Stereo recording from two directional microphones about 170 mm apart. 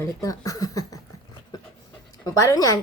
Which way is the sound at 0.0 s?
20° left (ahead or behind).